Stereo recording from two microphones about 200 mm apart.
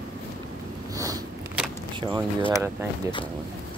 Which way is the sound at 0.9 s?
15° right (ahead or behind).